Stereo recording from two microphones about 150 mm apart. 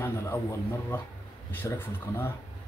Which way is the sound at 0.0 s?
20° left (ahead or behind).